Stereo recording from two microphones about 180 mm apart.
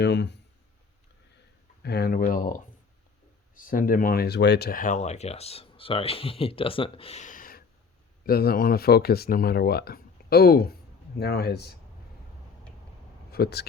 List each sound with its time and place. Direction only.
0.0 s speech: 70° left (ahead or behind)
1.8 s speech: 65° left (ahead or behind)
13.3 s speech: 65° left (ahead or behind)